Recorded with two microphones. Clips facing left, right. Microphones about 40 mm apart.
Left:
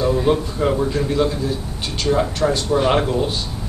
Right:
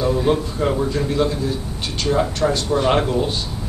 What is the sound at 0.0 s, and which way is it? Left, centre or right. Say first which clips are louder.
A man's voice: left 1 dB; centre.